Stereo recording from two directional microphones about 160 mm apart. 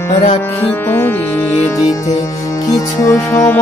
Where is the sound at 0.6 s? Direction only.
15° left (ahead or behind).